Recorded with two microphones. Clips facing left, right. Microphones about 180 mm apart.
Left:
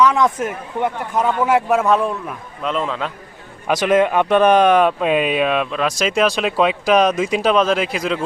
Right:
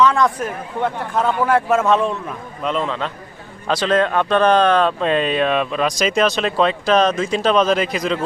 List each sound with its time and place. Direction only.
0.0 s a man's voice: 15° left (ahead or behind)
3.7 s speech: 15° left (ahead or behind)